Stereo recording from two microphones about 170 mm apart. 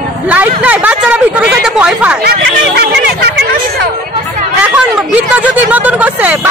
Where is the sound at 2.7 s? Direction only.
75° right (ahead or behind).